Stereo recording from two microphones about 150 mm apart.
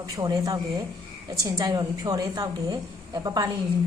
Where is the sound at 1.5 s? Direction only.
25° right (ahead or behind).